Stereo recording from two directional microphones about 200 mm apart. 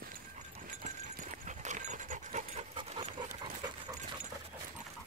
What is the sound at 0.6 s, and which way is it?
Pant, 40° right (ahead or behind).